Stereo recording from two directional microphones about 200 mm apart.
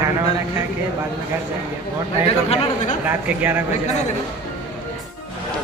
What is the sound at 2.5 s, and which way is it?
Speech, 30° left (ahead or behind).